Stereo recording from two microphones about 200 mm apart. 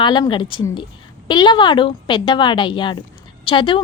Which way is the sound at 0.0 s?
25° left (ahead or behind).